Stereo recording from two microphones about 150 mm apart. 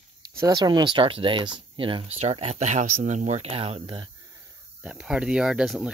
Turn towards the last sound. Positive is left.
turn(degrees=-5)  # may be behind; listen again after turning